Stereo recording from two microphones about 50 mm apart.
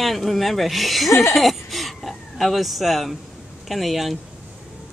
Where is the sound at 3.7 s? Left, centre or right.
Centre.